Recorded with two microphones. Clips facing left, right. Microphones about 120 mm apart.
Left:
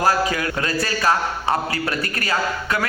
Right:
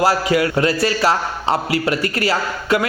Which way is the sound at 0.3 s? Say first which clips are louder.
Right 7 dB; 25° right (ahead or behind).